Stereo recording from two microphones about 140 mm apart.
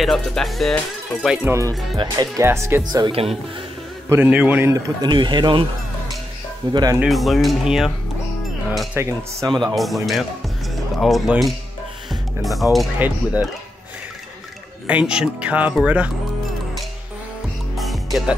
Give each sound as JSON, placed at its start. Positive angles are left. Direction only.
{"t": 0.0, "sound": "speech", "side_deg": 0}
{"t": 1.5, "sound": "a man's voice", "side_deg": -20}
{"t": 4.1, "sound": "a man's voice", "side_deg": -10}
{"t": 6.7, "sound": "a man's voice", "side_deg": -30}
{"t": 7.0, "sound": "speech", "side_deg": 0}
{"t": 8.9, "sound": "a man's voice", "side_deg": -20}
{"t": 9.5, "sound": "speech", "side_deg": -30}
{"t": 9.8, "sound": "speech", "side_deg": 0}
{"t": 12.1, "sound": "music", "side_deg": 0}
{"t": 13.0, "sound": "speech", "side_deg": -10}
{"t": 14.9, "sound": "speech", "side_deg": -5}
{"t": 17.7, "sound": "music", "side_deg": 0}